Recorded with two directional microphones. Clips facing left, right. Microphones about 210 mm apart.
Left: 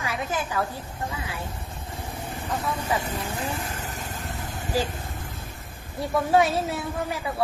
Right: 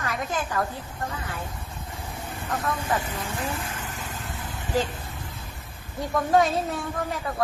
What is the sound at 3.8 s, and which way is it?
Vehicle, 40° left (ahead or behind).